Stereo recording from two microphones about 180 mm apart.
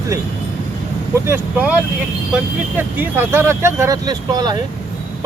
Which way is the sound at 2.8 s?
10° right (ahead or behind).